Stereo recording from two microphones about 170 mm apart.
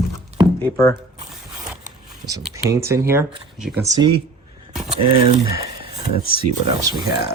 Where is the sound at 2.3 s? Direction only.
15° right (ahead or behind).